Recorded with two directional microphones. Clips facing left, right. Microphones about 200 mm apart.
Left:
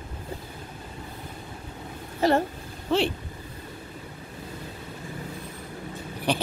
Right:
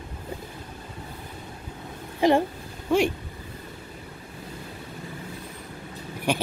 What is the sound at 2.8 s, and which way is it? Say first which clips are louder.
Speech: right 2 dB; 10° right (ahead or behind).